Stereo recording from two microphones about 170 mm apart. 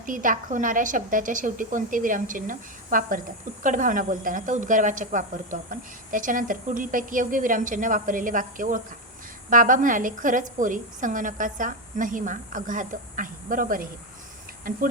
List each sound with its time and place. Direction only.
0.0 s a woman's voice: 50° right (ahead or behind)